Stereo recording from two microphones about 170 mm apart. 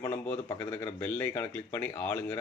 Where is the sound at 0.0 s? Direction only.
10° left (ahead or behind).